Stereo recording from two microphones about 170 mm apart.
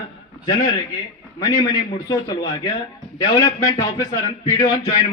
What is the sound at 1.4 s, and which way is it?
A man's voice, 20° left (ahead or behind).